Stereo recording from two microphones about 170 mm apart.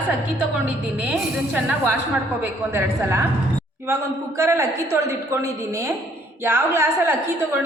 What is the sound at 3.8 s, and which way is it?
A man's voice, 15° right (ahead or behind).